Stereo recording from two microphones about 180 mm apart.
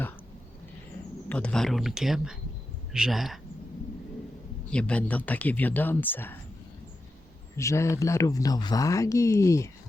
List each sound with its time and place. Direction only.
1.3 s speech: 5° left (ahead or behind)
4.7 s speech: 5° left (ahead or behind)
7.5 s speech: 15° left (ahead or behind)